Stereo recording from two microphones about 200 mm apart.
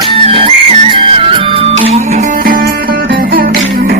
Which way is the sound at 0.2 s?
25° right (ahead or behind).